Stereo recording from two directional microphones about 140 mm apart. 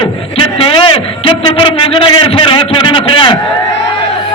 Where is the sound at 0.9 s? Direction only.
35° left (ahead or behind).